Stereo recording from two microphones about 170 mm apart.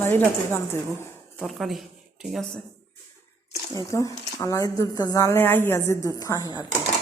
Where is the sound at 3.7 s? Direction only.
20° left (ahead or behind).